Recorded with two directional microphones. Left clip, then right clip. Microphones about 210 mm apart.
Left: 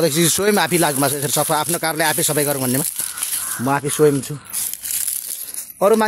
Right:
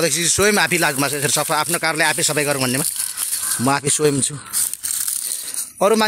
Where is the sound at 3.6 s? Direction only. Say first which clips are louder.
Left 2 dB; 15° right (ahead or behind).